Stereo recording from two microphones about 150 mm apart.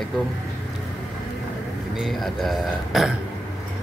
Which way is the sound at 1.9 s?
Centre (ahead or behind).